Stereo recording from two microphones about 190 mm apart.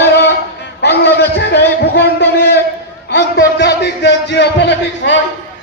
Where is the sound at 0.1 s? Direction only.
65° left (ahead or behind).